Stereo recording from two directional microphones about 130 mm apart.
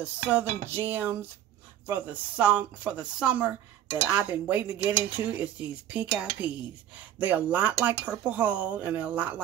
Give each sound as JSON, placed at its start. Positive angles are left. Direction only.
{"t": 0.0, "sound": "speech", "side_deg": -10}